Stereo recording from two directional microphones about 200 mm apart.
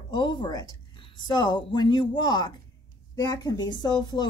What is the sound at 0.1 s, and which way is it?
A woman's voice, 25° left (ahead or behind).